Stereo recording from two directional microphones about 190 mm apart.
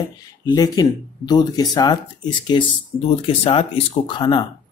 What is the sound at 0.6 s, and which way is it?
Speech, 20° left (ahead or behind).